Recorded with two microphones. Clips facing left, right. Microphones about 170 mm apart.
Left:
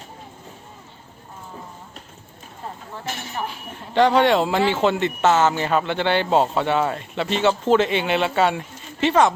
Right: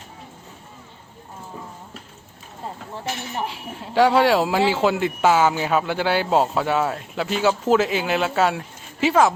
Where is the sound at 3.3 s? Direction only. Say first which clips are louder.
Even; 25° right (ahead or behind).